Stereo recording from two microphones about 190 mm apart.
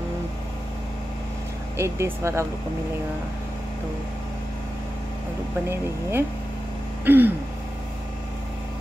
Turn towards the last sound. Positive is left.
turn(degrees=-10)  # may be behind; listen again after turning